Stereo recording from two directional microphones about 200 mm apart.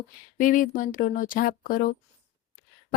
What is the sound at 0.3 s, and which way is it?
A woman's voice, 40° left (ahead or behind).